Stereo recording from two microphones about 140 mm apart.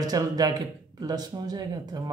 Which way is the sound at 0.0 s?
25° right (ahead or behind).